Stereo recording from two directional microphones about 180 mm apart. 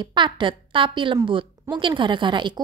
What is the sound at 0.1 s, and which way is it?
Speech, 25° right (ahead or behind).